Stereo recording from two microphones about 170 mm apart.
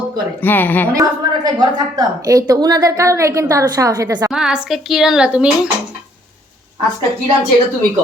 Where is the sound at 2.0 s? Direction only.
20° right (ahead or behind).